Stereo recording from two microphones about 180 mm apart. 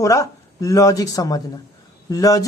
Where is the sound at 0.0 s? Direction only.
20° left (ahead or behind).